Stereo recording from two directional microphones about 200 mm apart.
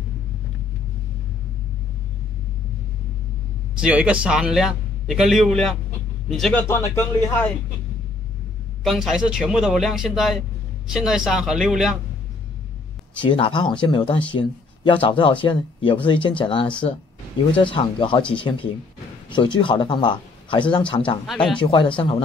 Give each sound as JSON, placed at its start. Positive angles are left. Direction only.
{"t": 3.8, "sound": "a man's voice", "side_deg": -5}
{"t": 8.8, "sound": "a man's voice", "side_deg": 0}
{"t": 13.2, "sound": "speech", "side_deg": 25}